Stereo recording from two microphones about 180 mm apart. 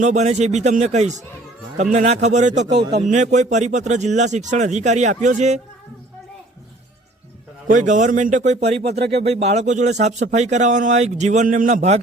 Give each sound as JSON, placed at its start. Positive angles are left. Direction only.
{"t": 0.0, "sound": "speech", "side_deg": -40}
{"t": 7.7, "sound": "speech", "side_deg": -45}